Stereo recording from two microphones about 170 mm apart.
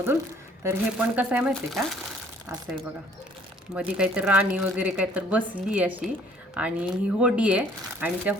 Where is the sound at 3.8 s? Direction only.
5° right (ahead or behind).